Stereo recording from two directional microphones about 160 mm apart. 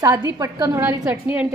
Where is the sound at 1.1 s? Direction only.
10° right (ahead or behind).